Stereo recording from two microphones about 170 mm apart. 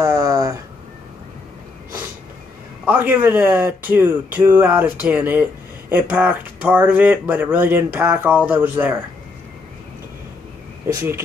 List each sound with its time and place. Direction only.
0.0 s a sound: 20° right (ahead or behind)
2.8 s speech: 10° right (ahead or behind)
10.9 s speech: 15° right (ahead or behind)